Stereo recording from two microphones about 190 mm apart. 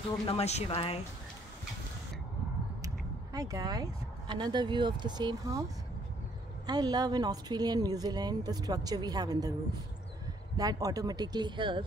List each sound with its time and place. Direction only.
0.3 s speech: 35° left (ahead or behind)
3.3 s a woman's voice: 20° right (ahead or behind)
10.6 s a woman's voice: 20° right (ahead or behind)